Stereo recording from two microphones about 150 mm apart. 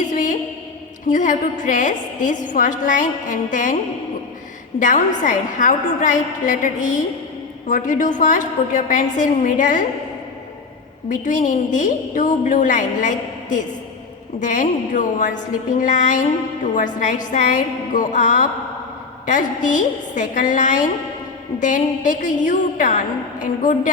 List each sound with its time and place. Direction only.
0.1 s a sound: 60° left (ahead or behind)
1.0 s a woman's voice: 60° left (ahead or behind)
4.8 s a woman's voice: 60° left (ahead or behind)
11.1 s a woman's voice: 60° left (ahead or behind)